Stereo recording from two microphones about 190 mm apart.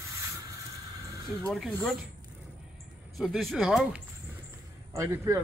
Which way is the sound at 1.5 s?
Centre (ahead or behind).